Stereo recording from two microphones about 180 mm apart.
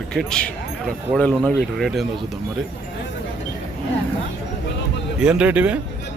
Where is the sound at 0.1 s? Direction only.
5° left (ahead or behind).